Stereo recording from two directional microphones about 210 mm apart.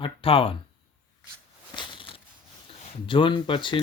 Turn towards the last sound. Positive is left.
turn(degrees=25)  # may be behind; listen again after turning